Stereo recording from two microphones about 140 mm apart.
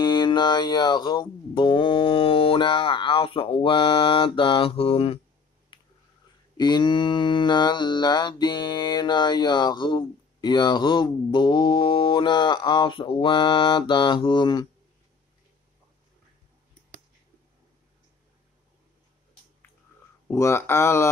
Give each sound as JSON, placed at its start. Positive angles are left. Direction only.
{"t": 0.0, "sound": "speech", "side_deg": 30}
{"t": 6.5, "sound": "mantra", "side_deg": 30}
{"t": 20.2, "sound": "speech", "side_deg": 20}